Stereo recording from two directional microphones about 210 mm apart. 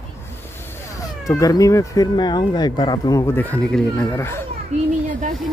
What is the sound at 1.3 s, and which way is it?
Speech, 15° left (ahead or behind).